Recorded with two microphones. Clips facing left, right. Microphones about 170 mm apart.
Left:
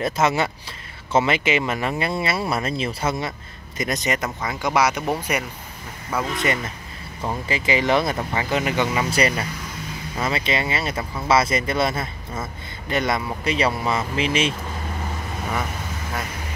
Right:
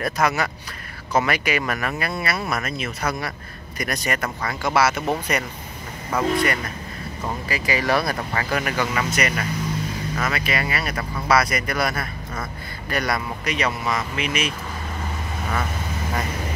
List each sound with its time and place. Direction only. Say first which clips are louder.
0.0 s speech: left 2 dB; 25° left (ahead or behind)
6.3 s speech: right 2 dB; 20° left (ahead or behind)
9.1 s speech: left 2 dB; 30° left (ahead or behind)